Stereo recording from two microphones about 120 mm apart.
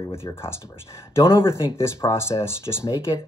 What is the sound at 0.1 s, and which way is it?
Speech, 20° left (ahead or behind).